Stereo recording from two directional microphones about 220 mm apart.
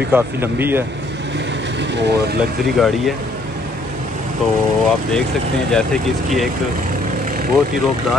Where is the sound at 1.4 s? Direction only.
50° right (ahead or behind).